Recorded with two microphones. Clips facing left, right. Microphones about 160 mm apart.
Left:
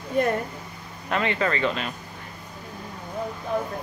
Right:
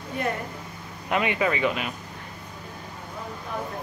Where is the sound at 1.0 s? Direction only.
15° right (ahead or behind).